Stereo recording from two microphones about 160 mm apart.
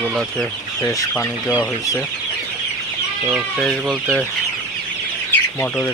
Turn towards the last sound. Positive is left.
turn(degrees=15)  # may be behind; listen again after turning